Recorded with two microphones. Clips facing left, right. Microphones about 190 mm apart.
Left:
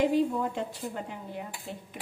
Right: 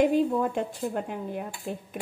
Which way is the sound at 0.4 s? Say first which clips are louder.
Right 4 dB; 55° right (ahead or behind).